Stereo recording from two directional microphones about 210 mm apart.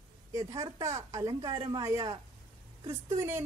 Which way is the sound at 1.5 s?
25° right (ahead or behind).